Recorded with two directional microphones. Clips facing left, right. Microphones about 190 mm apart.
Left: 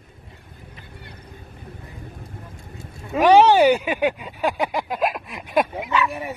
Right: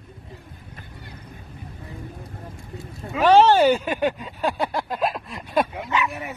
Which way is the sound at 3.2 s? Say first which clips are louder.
Left 1 dB; 15° left (ahead or behind).